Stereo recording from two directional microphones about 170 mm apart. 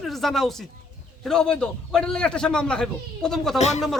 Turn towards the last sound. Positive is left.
turn(degrees=40)  # may be behind; listen again after turning